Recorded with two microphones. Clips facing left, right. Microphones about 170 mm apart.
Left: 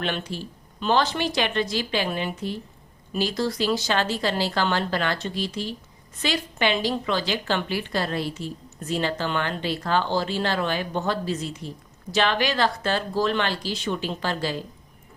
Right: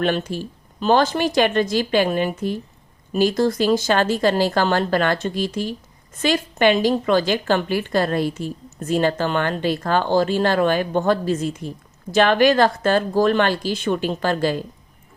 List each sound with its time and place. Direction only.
0.0 s a woman's voice: 45° right (ahead or behind)